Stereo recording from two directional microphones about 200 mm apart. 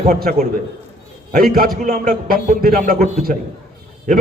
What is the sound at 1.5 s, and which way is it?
A man's voice, 45° right (ahead or behind).